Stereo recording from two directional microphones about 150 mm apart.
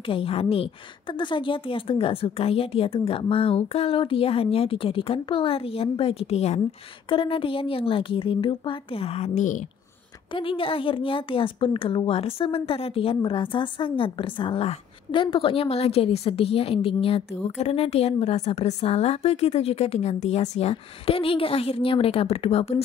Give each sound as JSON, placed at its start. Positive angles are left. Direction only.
{"t": 0.0, "sound": "a woman's voice", "side_deg": 35}
{"t": 10.3, "sound": "a woman's voice", "side_deg": 35}